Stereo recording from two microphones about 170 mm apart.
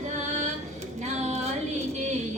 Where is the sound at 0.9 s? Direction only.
40° right (ahead or behind).